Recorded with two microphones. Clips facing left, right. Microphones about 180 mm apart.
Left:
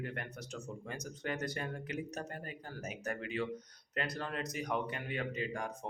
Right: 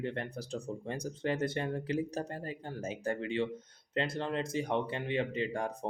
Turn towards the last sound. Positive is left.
turn(degrees=-30)  # may be behind; listen again after turning